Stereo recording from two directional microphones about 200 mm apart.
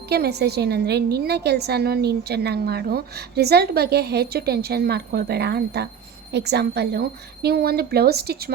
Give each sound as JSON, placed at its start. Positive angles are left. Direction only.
{"t": 0.1, "sound": "a woman's voice", "side_deg": -55}